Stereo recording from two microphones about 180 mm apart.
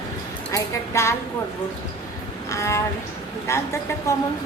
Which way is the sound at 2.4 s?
15° left (ahead or behind).